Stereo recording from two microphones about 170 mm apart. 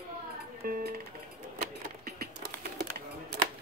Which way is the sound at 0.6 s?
65° right (ahead or behind).